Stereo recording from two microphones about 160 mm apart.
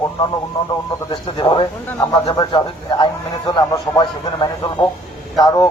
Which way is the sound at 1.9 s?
15° left (ahead or behind).